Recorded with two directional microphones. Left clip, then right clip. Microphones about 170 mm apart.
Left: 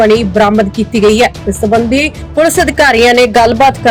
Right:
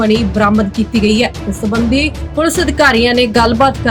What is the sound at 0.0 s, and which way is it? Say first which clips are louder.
Speech: left 5 dB; 30° left (ahead or behind).